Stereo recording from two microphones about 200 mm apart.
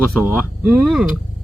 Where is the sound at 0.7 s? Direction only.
5° right (ahead or behind).